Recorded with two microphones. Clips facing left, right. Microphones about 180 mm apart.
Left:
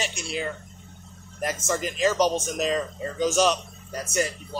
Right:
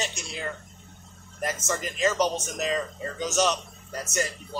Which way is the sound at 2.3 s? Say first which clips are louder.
Left 4 dB; 25° left (ahead or behind).